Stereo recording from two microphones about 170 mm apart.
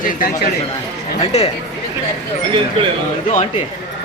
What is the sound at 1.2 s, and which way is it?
Speech, 35° left (ahead or behind).